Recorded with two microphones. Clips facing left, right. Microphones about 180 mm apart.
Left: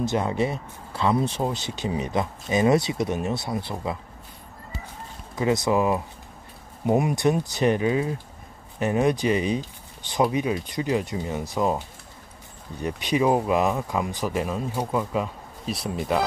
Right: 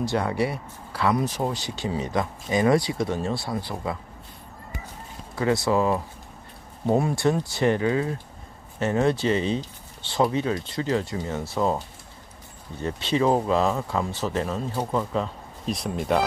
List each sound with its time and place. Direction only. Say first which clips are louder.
0.0 s speech: left 1 dB; 20° left (ahead or behind)
5.3 s speech: even; 20° left (ahead or behind)
12.8 s speech: even; 15° left (ahead or behind)